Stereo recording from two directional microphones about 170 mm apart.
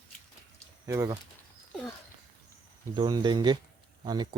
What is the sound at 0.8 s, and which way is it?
Speech, 20° right (ahead or behind).